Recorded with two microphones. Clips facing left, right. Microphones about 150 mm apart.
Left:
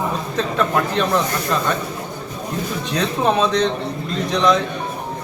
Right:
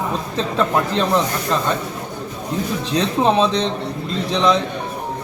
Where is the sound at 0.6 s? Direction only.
30° right (ahead or behind).